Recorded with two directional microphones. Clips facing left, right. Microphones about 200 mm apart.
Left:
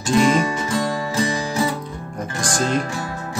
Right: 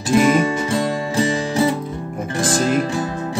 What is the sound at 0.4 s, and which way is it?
Music, 25° right (ahead or behind).